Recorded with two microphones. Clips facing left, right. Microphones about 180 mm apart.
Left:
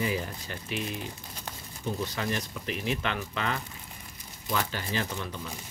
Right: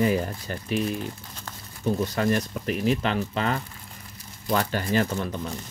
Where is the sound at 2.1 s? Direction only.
45° right (ahead or behind).